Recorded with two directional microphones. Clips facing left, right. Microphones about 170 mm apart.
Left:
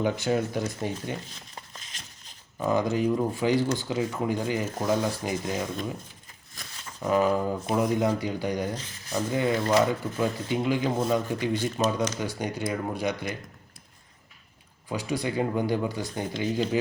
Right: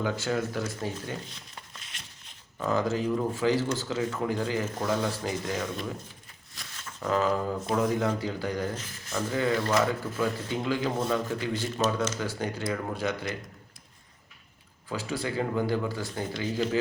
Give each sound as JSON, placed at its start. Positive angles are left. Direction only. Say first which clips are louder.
{"t": 0.0, "sound": "speech", "louder": "left 3 dB", "side_deg": 20}
{"t": 1.7, "sound": "a sound", "louder": "left 2 dB", "side_deg": 40}
{"t": 2.6, "sound": "speech", "louder": "left 2 dB", "side_deg": 15}
{"t": 7.0, "sound": "speech", "louder": "left 3 dB", "side_deg": 15}
{"t": 14.8, "sound": "speech", "louder": "left 3 dB", "side_deg": 15}